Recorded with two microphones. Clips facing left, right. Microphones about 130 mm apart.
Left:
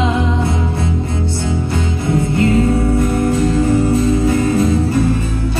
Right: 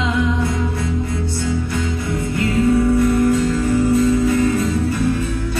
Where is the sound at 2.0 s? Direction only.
25° left (ahead or behind).